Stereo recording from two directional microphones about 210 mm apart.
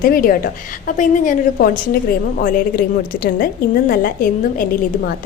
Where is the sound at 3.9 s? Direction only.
45° left (ahead or behind).